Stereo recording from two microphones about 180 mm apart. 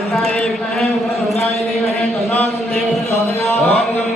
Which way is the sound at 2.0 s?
10° left (ahead or behind).